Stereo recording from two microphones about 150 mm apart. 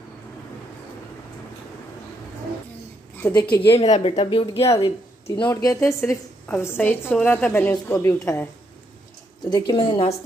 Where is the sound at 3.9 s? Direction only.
45° left (ahead or behind).